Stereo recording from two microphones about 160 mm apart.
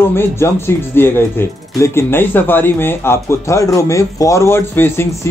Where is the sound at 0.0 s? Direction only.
15° left (ahead or behind).